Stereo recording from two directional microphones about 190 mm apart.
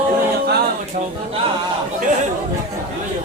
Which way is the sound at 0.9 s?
40° right (ahead or behind).